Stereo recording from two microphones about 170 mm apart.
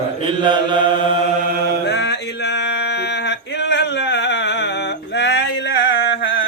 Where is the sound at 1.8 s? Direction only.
80° left.